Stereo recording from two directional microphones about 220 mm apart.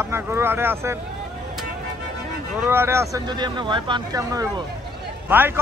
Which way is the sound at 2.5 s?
10° right (ahead or behind).